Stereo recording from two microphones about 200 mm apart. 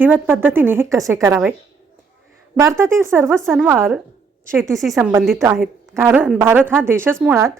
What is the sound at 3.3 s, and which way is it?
Speech, centre (ahead or behind).